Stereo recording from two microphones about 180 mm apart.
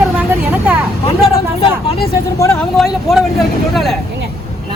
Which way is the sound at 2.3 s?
15° left (ahead or behind).